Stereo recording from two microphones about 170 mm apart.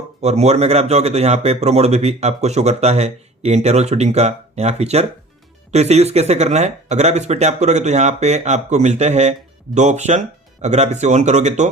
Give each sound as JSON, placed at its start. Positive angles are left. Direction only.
{"t": 0.2, "sound": "speech", "side_deg": -40}